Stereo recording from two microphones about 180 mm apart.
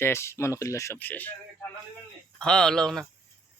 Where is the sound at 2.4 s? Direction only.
5° left (ahead or behind).